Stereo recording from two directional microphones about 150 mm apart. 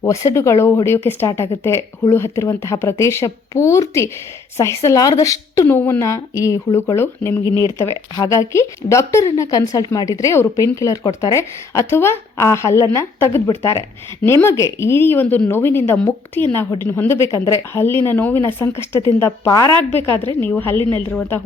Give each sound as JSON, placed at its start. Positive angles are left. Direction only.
{"t": 0.0, "sound": "speech", "side_deg": 20}
{"t": 7.4, "sound": "speech", "side_deg": -25}
{"t": 7.8, "sound": "speech", "side_deg": 20}